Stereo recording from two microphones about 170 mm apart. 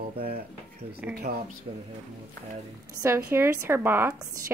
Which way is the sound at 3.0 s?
15° right (ahead or behind).